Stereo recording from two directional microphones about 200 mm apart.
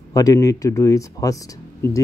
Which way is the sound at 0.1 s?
15° left (ahead or behind).